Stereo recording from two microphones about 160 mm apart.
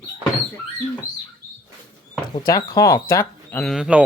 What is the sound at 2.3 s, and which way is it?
Speech, 25° left (ahead or behind).